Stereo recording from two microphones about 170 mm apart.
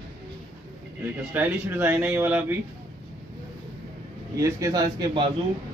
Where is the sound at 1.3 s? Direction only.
10° right (ahead or behind).